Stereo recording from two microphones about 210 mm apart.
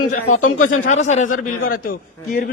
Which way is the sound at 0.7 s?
35° left (ahead or behind).